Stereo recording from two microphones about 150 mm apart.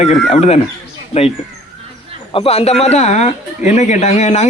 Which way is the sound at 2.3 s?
40° left (ahead or behind).